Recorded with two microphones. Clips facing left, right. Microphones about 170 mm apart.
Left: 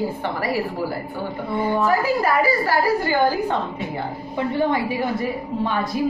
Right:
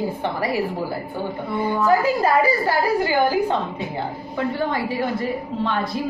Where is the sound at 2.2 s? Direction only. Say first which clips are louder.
Right 1 dB; 20° right (ahead or behind).